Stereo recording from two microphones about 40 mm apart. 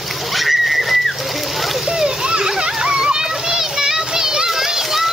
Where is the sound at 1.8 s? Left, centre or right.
Centre.